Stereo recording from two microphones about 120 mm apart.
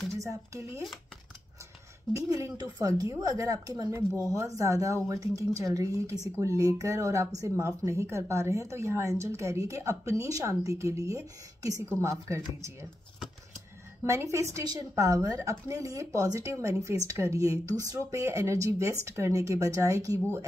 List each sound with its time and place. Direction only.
0.1 s speech: 25° right (ahead or behind)
2.1 s a woman's voice: 30° right (ahead or behind)
14.0 s speech: 25° right (ahead or behind)